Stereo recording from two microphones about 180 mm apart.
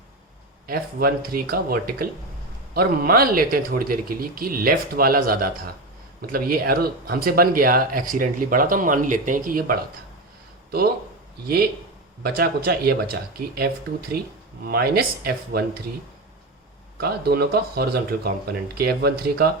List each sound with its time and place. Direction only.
0.7 s speech: 55° right (ahead or behind)
11.4 s speech: 55° right (ahead or behind)
14.7 s speech: 60° right (ahead or behind)
17.0 s speech: 60° right (ahead or behind)